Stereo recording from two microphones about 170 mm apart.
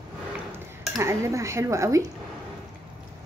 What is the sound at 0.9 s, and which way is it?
Speech, 15° right (ahead or behind).